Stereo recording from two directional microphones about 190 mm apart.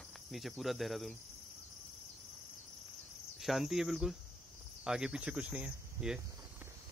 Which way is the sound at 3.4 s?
Centre (ahead or behind).